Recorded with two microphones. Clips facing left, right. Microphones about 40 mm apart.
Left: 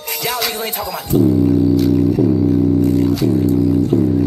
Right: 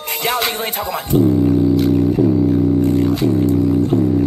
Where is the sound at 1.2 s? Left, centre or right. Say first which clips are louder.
Left 1 dB; centre.